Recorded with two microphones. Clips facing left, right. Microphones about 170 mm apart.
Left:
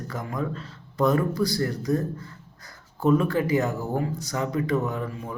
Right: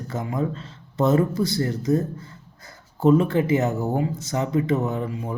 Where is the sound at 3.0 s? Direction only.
25° right (ahead or behind).